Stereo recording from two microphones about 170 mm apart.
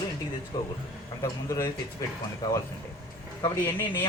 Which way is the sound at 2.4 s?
20° left (ahead or behind).